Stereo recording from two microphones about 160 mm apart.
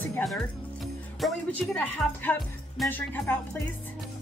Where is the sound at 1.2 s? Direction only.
Centre (ahead or behind).